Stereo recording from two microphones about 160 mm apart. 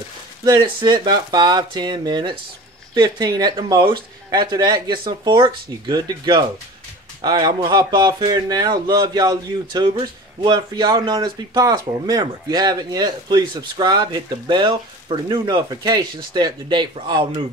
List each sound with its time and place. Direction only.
0.5 s speech: 30° right (ahead or behind)